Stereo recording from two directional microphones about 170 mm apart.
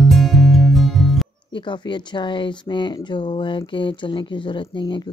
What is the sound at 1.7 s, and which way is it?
Speech, 25° left (ahead or behind).